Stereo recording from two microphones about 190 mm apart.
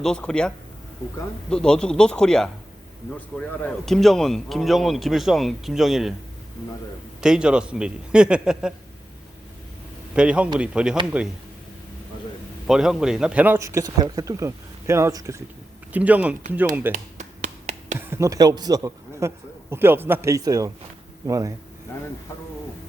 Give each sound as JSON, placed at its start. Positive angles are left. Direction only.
{"t": 0.0, "sound": "speech", "side_deg": 5}
{"t": 7.2, "sound": "speech", "side_deg": -5}
{"t": 10.2, "sound": "speech", "side_deg": -5}
{"t": 12.6, "sound": "speech", "side_deg": 0}
{"t": 16.9, "sound": "a sound", "side_deg": -40}
{"t": 18.0, "sound": "speech", "side_deg": -15}